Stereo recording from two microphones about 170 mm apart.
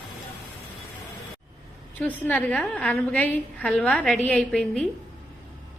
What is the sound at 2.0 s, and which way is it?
A woman's voice, 10° left (ahead or behind).